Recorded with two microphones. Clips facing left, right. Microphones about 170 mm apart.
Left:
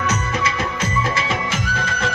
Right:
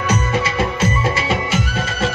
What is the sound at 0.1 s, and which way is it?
Music, 25° right (ahead or behind).